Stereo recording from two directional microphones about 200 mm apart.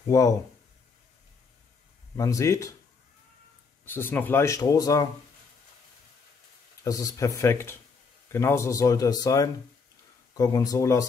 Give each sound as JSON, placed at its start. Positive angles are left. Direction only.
{"t": 0.1, "sound": "speech", "side_deg": 15}
{"t": 2.1, "sound": "speech", "side_deg": 15}
{"t": 3.8, "sound": "speech", "side_deg": 10}
{"t": 6.8, "sound": "speech", "side_deg": 15}